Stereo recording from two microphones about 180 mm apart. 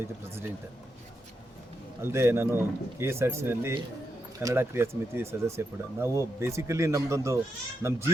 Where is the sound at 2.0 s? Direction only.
15° right (ahead or behind).